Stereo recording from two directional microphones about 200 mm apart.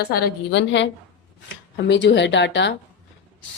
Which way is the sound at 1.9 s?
60° left (ahead or behind).